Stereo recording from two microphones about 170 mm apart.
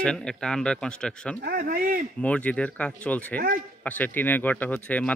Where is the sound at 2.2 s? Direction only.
10° left (ahead or behind).